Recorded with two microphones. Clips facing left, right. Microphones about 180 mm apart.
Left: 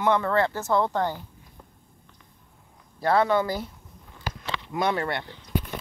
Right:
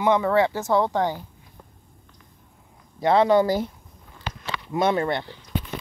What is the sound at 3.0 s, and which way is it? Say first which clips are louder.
Speech: right 4 dB; 25° right (ahead or behind).